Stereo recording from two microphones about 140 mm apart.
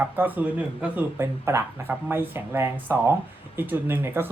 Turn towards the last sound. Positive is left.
turn(degrees=-15)  # may be behind; listen again after turning